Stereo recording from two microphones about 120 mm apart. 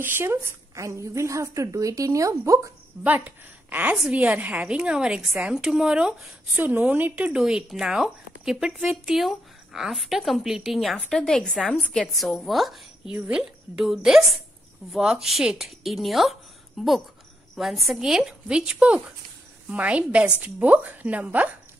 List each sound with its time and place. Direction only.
0.0 s a woman's voice: 20° right (ahead or behind)
3.0 s a woman's voice: 15° right (ahead or behind)